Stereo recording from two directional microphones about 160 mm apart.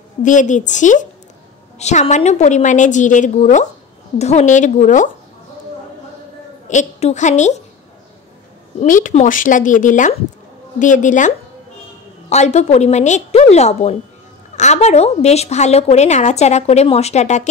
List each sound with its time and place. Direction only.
0.2 s a woman's voice: 50° left (ahead or behind)
6.7 s a woman's voice: 45° left (ahead or behind)
8.7 s a woman's voice: 55° left (ahead or behind)